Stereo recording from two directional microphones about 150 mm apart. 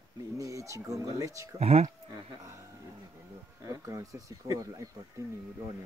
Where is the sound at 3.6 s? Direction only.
20° right (ahead or behind).